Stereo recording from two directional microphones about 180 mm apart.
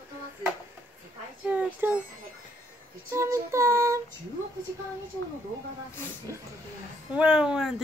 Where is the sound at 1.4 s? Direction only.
10° right (ahead or behind).